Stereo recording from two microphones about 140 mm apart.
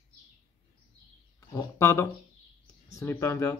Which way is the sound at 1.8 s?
20° left (ahead or behind).